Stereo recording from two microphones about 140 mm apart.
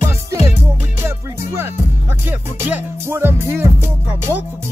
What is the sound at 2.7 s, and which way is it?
Music, 15° right (ahead or behind).